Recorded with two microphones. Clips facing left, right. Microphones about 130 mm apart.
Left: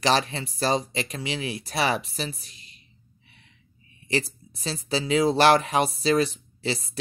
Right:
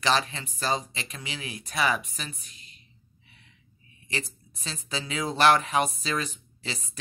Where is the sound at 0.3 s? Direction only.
35° left (ahead or behind).